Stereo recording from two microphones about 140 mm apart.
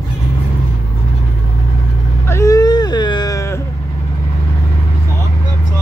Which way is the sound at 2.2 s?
20° left (ahead or behind).